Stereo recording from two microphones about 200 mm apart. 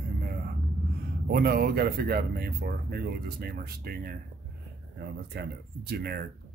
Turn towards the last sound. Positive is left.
turn(degrees=-50)  # may be behind; listen again after turning